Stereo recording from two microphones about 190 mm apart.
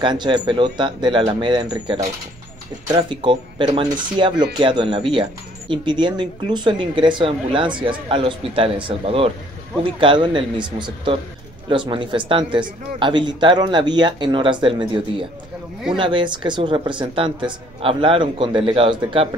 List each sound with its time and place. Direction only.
0.0 s speech: 25° right (ahead or behind)
3.0 s speech: 25° right (ahead or behind)